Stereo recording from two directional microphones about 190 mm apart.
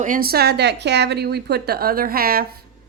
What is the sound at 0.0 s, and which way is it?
A woman's voice, 50° right (ahead or behind).